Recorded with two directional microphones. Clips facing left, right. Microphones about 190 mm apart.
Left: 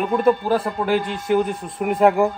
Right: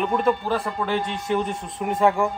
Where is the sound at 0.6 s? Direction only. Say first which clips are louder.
Left 4 dB; 5° left (ahead or behind).